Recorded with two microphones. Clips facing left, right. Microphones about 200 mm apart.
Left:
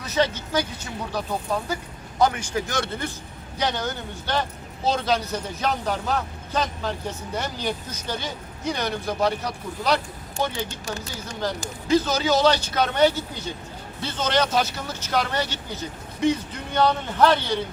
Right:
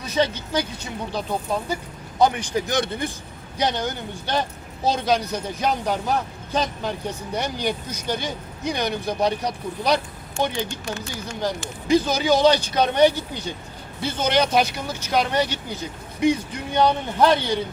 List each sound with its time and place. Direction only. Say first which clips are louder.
0.0 s speech: right 1 dB; 15° right (ahead or behind)
2.2 s speech: right 2 dB; 20° right (ahead or behind)
10.7 s speech: right 2 dB; 40° left (ahead or behind)
11.9 s speech: right 2 dB; 15° right (ahead or behind)